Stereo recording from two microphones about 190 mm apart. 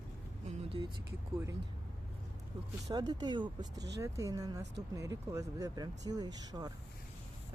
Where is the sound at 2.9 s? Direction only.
20° right (ahead or behind).